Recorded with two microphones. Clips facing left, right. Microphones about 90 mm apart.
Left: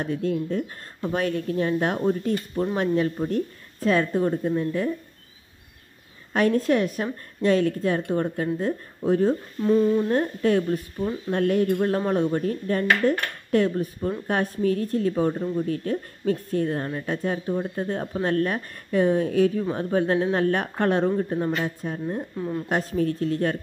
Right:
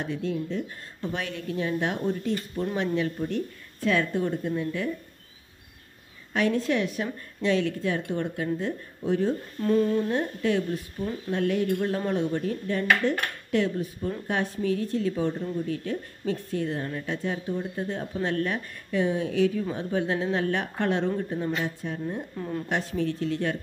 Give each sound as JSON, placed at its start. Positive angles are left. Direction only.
{"t": 0.0, "sound": "speech", "side_deg": 45}
{"t": 6.3, "sound": "speech", "side_deg": 45}
{"t": 9.6, "sound": "humming", "side_deg": 15}
{"t": 10.0, "sound": "speech", "side_deg": 45}
{"t": 21.5, "sound": "speech", "side_deg": 65}
{"t": 22.3, "sound": "humming", "side_deg": 15}
{"t": 22.7, "sound": "speech", "side_deg": 40}